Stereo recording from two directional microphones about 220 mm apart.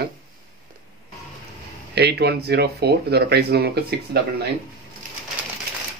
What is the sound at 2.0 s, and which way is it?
Speech, 50° right (ahead or behind).